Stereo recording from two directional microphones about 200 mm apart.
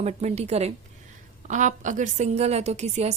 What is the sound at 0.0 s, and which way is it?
A woman's voice, 35° right (ahead or behind).